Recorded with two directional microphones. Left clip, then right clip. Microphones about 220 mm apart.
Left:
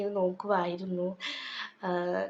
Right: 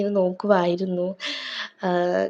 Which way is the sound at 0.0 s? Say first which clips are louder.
Right 8 dB; 25° right (ahead or behind).